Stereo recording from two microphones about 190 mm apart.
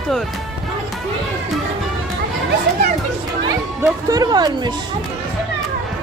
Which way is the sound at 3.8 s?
20° right (ahead or behind).